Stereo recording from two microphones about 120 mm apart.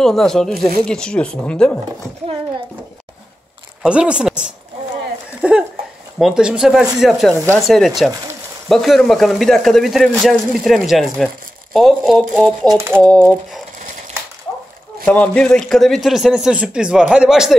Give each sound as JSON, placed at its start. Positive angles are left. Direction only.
{"t": 0.0, "sound": "speech", "side_deg": 5}
{"t": 3.8, "sound": "speech", "side_deg": -10}
{"t": 12.6, "sound": "a sound", "side_deg": -20}
{"t": 13.0, "sound": "speech", "side_deg": 5}
{"t": 15.0, "sound": "speech", "side_deg": 10}